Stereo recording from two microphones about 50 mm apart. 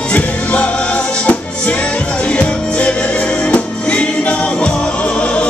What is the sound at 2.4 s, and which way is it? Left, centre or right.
Music, left.